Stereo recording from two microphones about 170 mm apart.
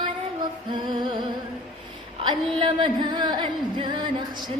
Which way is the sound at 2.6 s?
30° right (ahead or behind).